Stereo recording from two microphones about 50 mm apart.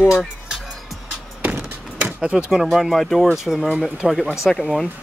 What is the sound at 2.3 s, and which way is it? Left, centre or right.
Speech, centre.